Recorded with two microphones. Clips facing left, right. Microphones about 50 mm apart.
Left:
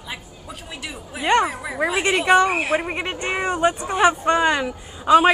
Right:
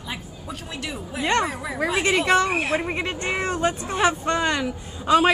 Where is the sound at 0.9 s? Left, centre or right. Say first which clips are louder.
Left 4 dB; centre.